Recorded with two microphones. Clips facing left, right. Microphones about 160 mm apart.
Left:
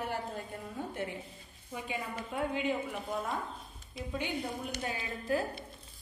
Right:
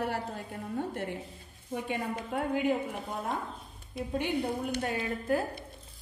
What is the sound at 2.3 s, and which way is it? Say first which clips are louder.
Speech: right 4 dB; 55° right (ahead or behind).